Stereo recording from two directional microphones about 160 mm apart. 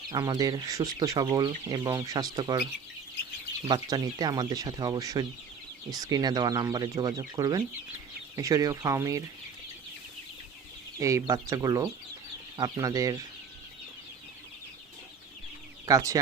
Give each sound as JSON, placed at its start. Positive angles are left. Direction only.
{"t": 0.1, "sound": "speech", "side_deg": -25}
{"t": 3.7, "sound": "speech", "side_deg": -25}
{"t": 11.0, "sound": "speech", "side_deg": -20}
{"t": 15.9, "sound": "speech", "side_deg": -20}